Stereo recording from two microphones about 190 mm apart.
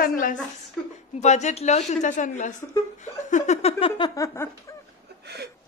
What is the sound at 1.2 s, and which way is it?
A woman's voice, 35° left (ahead or behind).